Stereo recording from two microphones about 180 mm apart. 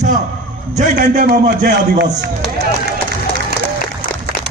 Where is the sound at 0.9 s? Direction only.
60° right (ahead or behind).